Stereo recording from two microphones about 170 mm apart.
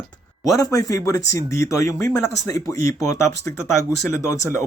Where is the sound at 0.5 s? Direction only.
20° left (ahead or behind).